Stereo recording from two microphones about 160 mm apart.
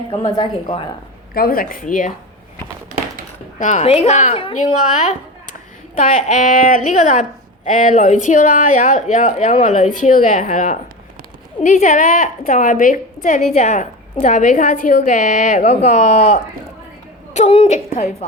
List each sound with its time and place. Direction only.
0.3 s a woman's voice: 35° left (ahead or behind)
1.3 s a woman's voice: 65° left (ahead or behind)
3.6 s speech: 50° left (ahead or behind)
4.6 s a woman's voice: 50° left (ahead or behind)